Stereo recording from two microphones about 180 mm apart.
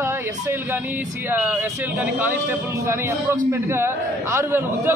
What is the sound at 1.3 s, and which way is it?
A man's voice, 10° right (ahead or behind).